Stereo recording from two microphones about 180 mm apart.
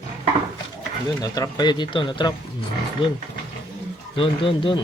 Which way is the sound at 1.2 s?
20° left (ahead or behind).